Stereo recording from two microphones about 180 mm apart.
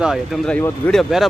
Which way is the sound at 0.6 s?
10° left (ahead or behind).